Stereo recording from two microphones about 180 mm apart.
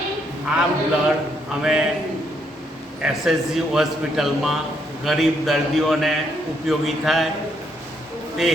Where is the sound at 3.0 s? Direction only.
5° right (ahead or behind).